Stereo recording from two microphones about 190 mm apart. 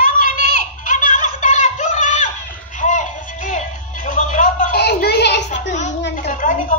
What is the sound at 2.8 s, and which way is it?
Music, 40° left (ahead or behind).